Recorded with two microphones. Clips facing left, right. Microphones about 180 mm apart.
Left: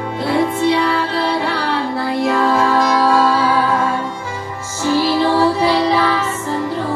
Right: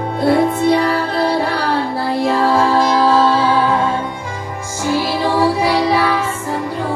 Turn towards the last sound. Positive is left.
turn(degrees=-10)  # may be behind; listen again after turning